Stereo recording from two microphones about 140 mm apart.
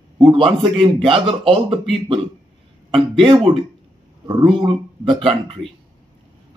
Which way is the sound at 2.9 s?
40° right (ahead or behind).